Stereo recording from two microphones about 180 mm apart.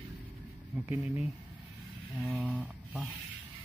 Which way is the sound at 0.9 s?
10° right (ahead or behind).